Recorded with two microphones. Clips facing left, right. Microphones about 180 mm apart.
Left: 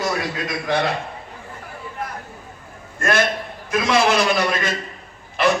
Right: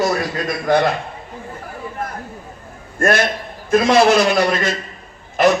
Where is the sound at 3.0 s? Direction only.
55° right (ahead or behind).